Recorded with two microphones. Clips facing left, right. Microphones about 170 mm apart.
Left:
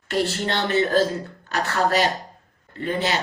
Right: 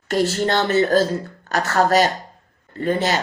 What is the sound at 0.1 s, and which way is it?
Speech, 40° right (ahead or behind).